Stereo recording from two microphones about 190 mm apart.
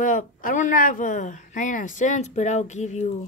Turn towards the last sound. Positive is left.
turn(degrees=35)  # may be behind; listen again after turning